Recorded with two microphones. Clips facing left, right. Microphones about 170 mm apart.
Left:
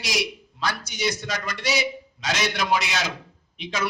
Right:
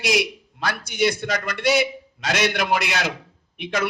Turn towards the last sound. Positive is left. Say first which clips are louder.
# right 3 dB
turn(degrees=-55)  # may be behind; listen again after turning